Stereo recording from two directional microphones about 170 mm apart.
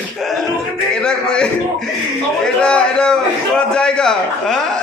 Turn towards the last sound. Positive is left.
turn(degrees=5)  # may be behind; listen again after turning